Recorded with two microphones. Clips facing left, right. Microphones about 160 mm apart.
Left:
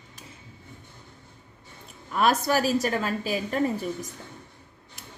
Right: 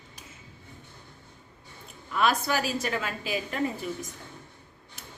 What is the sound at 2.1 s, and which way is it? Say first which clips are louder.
A woman's voice: left 3 dB; 40° left (ahead or behind).